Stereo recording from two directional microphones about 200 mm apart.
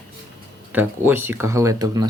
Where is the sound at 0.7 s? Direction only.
10° right (ahead or behind).